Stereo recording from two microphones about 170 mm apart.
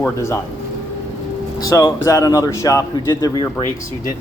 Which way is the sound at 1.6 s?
20° left (ahead or behind).